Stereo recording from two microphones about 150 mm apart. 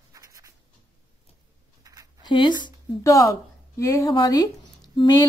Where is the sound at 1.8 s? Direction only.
25° right (ahead or behind).